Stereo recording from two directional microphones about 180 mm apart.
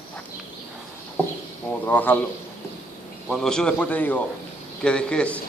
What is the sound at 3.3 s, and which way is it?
A man's voice, 5° left (ahead or behind).